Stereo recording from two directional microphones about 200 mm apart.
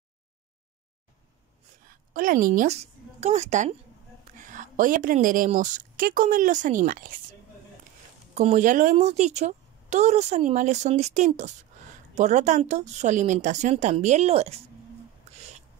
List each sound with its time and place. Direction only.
1.9 s a woman's voice: 45° right (ahead or behind)
8.4 s a woman's voice: 35° right (ahead or behind)